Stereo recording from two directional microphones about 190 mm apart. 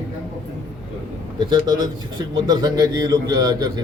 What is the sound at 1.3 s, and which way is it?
A man's voice, 20° right (ahead or behind).